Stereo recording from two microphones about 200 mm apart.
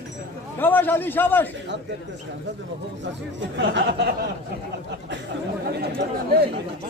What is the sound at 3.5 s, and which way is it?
Speech, 60° right (ahead or behind).